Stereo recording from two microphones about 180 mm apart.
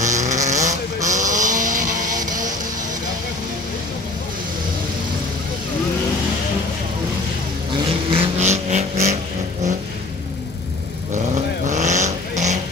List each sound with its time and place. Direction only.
0.0 s vehicle: 40° right (ahead or behind)
1.0 s a sound: 45° right (ahead or behind)
8.2 s vehicle: 40° right (ahead or behind)
11.6 s vehicle: 40° right (ahead or behind)